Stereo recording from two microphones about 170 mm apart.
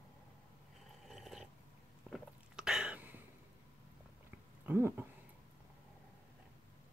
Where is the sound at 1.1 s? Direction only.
Centre (ahead or behind).